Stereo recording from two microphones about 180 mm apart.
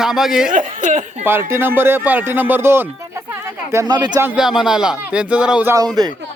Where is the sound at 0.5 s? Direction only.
45° right (ahead or behind).